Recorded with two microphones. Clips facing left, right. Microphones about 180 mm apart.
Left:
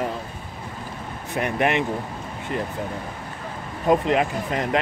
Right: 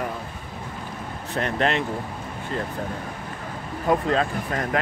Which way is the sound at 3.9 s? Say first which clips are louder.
Left 2 dB; 20° left (ahead or behind).